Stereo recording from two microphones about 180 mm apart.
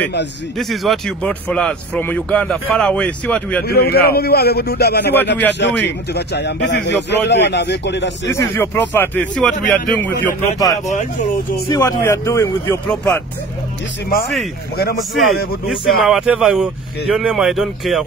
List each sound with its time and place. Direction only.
0.6 s speech: centre (ahead or behind)
3.6 s a man's voice: 60° left (ahead or behind)
5.6 s a man's voice: 75° left (ahead or behind)
8.3 s speech: 15° left (ahead or behind)
12.0 s speech: 15° left (ahead or behind)
15.1 s speech: centre (ahead or behind)